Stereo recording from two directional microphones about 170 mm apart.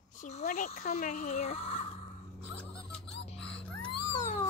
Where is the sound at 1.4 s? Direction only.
35° left (ahead or behind).